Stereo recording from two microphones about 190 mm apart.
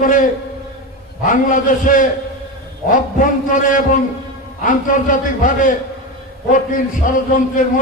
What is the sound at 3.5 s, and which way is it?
A man's voice, 45° left (ahead or behind).